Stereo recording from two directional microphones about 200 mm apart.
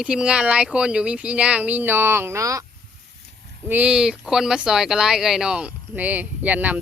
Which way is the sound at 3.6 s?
10° right (ahead or behind).